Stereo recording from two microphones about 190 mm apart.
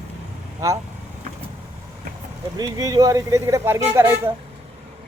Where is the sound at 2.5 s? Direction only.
20° right (ahead or behind).